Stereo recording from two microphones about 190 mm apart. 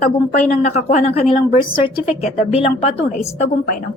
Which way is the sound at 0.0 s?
40° left (ahead or behind).